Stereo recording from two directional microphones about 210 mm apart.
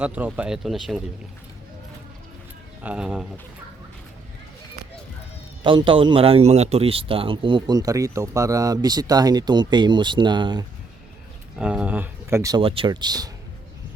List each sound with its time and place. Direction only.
0.0 s speech: 5° right (ahead or behind)
2.8 s speech: 5° right (ahead or behind)
5.6 s a man's voice: 25° right (ahead or behind)
11.5 s speech: 5° right (ahead or behind)